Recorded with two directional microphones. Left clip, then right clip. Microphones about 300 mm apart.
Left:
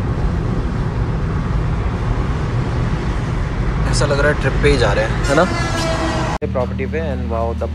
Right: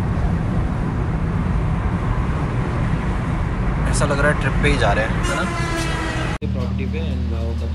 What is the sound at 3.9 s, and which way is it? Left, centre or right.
Speech, centre.